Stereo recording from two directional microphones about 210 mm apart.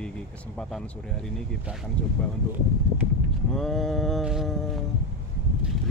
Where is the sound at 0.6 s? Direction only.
5° left (ahead or behind).